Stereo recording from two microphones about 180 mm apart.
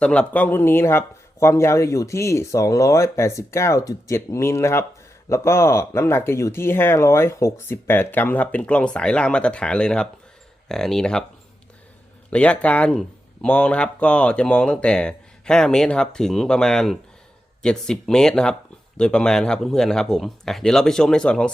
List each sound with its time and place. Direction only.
0.0 s speech: 5° left (ahead or behind)
12.3 s speech: 5° left (ahead or behind)